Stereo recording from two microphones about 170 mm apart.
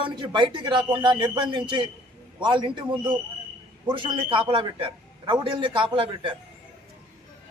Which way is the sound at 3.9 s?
30° right (ahead or behind).